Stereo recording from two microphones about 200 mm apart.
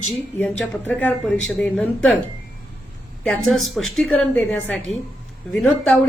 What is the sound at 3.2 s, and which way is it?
A woman's voice, centre (ahead or behind).